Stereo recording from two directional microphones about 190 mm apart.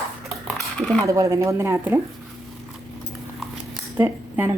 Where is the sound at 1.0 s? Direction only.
15° right (ahead or behind).